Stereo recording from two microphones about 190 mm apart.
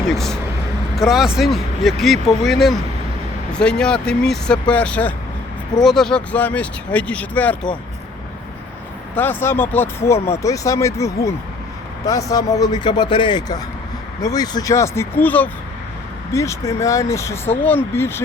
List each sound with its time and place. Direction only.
0.0 s speech: centre (ahead or behind)
9.1 s speech: 10° left (ahead or behind)